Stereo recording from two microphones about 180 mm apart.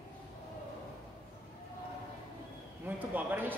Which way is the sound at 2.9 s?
10° right (ahead or behind).